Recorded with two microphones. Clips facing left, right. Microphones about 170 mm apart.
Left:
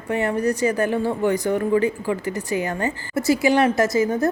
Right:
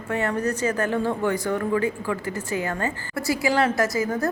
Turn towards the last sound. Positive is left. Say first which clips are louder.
# left 4 dB
turn(degrees=25)  # may be behind; listen again after turning